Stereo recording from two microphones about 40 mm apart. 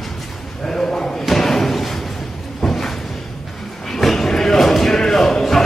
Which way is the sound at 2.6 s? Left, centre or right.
Centre.